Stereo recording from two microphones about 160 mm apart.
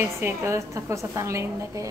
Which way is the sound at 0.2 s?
20° right (ahead or behind).